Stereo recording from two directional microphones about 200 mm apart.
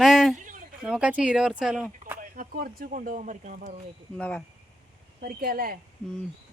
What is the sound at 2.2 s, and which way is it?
Speech, 45° right (ahead or behind).